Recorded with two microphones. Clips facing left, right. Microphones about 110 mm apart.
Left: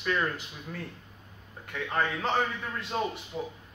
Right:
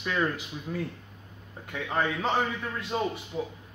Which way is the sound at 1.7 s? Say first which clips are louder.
Right 1 dB; 15° right (ahead or behind).